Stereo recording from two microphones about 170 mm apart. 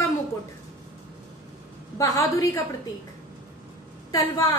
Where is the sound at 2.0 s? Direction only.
20° left (ahead or behind).